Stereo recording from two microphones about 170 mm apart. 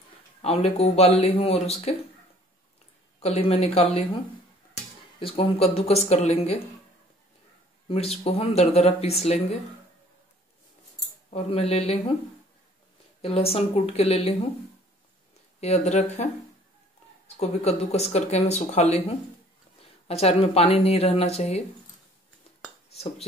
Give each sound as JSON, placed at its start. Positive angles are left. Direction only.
{"t": 0.4, "sound": "speech", "side_deg": 35}
{"t": 3.2, "sound": "speech", "side_deg": 35}
{"t": 5.2, "sound": "speech", "side_deg": 35}
{"t": 7.9, "sound": "speech", "side_deg": 35}
{"t": 11.2, "sound": "speech", "side_deg": 40}
{"t": 13.2, "sound": "speech", "side_deg": 35}
{"t": 15.6, "sound": "speech", "side_deg": 40}
{"t": 17.4, "sound": "speech", "side_deg": 40}
{"t": 22.8, "sound": "dishes", "side_deg": 40}